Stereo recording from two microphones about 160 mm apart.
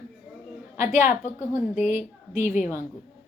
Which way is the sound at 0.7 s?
50° left (ahead or behind).